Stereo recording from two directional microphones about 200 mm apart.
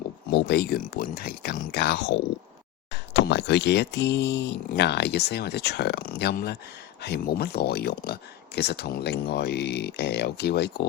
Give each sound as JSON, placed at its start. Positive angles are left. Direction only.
{"t": 0.3, "sound": "speech", "side_deg": 55}